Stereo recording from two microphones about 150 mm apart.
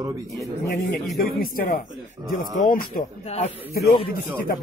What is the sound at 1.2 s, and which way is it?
A man's voice, 75° left (ahead or behind).